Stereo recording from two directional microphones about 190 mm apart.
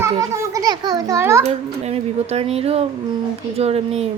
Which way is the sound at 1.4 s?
35° right (ahead or behind).